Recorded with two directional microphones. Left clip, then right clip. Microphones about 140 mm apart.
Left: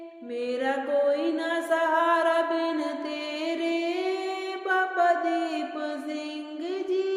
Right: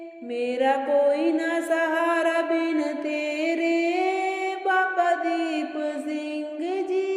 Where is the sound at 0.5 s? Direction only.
20° right (ahead or behind).